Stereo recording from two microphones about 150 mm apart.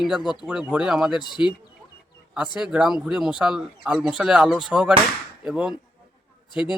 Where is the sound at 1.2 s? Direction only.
30° left (ahead or behind).